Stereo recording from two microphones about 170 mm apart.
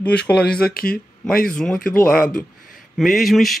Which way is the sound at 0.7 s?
60° left (ahead or behind).